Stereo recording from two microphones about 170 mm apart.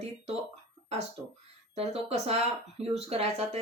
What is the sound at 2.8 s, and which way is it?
Speech, 35° right (ahead or behind).